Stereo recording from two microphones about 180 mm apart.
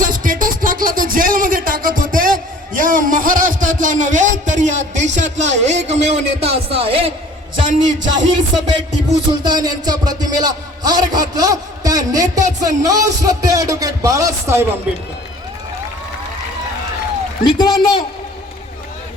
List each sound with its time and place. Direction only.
0.0 s music: 50° right (ahead or behind); by 7.1 s 30° right (ahead or behind)
7.7 s a man's voice: 45° right (ahead or behind)
9.4 s a man's voice: 25° right (ahead or behind)
17.4 s a man's voice: 25° left (ahead or behind)